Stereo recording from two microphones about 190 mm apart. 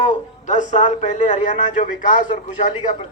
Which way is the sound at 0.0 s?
40° left (ahead or behind).